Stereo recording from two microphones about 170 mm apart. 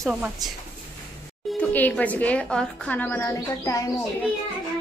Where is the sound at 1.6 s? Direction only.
10° left (ahead or behind).